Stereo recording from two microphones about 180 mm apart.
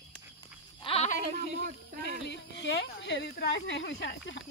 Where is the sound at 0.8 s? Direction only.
35° left (ahead or behind).